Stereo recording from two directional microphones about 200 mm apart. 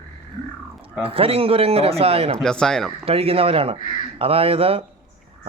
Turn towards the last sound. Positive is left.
turn(degrees=-30)  # may be behind; listen again after turning